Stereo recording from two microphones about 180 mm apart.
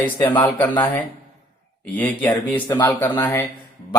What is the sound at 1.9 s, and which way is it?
Speech, 10° left (ahead or behind).